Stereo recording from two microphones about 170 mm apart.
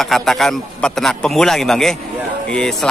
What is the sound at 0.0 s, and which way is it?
A man's voice, centre (ahead or behind).